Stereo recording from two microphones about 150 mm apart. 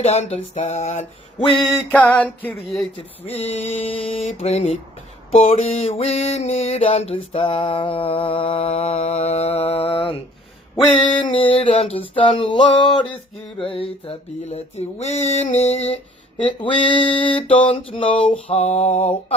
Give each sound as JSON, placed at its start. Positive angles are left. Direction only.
{"t": 0.0, "sound": "mantra", "side_deg": 45}
{"t": 1.9, "sound": "music", "side_deg": 10}
{"t": 3.0, "sound": "mantra", "side_deg": 45}
{"t": 3.4, "sound": "music", "side_deg": 10}
{"t": 3.8, "sound": "mantra", "side_deg": 40}
{"t": 11.3, "sound": "a sound", "side_deg": 35}
{"t": 16.5, "sound": "a sound", "side_deg": 35}
{"t": 18.5, "sound": "mantra", "side_deg": 45}